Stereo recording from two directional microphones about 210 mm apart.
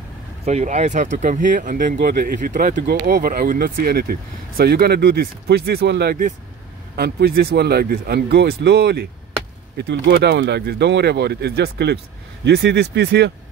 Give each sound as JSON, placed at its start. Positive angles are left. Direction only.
{"t": 0.5, "sound": "speech", "side_deg": -35}